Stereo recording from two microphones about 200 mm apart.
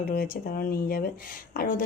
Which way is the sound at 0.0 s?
45° left (ahead or behind).